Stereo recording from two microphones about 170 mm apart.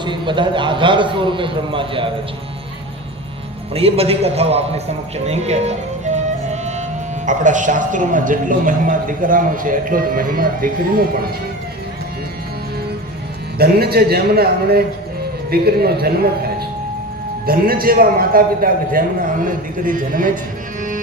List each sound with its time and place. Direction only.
0.0 s a man's voice: 30° right (ahead or behind)
3.8 s a man's voice: 35° right (ahead or behind)
6.1 s music: 45° right (ahead or behind)
7.3 s speech: 50° right (ahead or behind)
13.6 s a man's voice: 65° right (ahead or behind)
17.4 s a man's voice: 60° right (ahead or behind)